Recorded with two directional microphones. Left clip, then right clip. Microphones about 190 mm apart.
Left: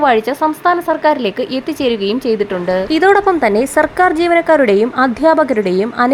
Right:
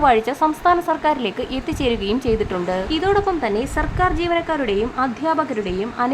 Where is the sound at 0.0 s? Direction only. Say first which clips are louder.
Left 4 dB; 15° left (ahead or behind).